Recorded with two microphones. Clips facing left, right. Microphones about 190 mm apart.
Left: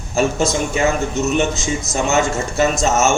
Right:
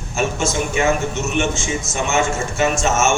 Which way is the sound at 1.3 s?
35° left (ahead or behind).